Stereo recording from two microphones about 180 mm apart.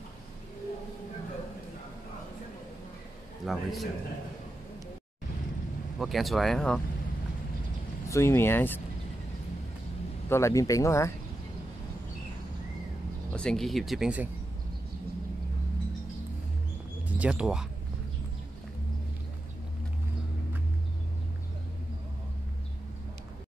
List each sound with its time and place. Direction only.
3.4 s speech: centre (ahead or behind)
5.9 s speech: centre (ahead or behind)
8.1 s a man's voice: 15° left (ahead or behind)
10.3 s a man's voice: 15° left (ahead or behind)
13.3 s speech: 5° left (ahead or behind)
17.1 s speech: 5° right (ahead or behind)